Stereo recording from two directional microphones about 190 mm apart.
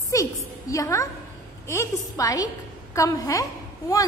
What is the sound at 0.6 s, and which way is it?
A woman's voice, 15° left (ahead or behind).